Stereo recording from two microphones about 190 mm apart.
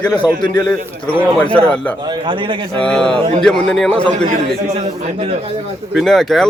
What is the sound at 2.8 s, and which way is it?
A man's voice, 5° left (ahead or behind).